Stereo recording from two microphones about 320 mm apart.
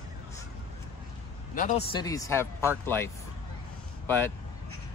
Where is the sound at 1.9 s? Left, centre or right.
Centre.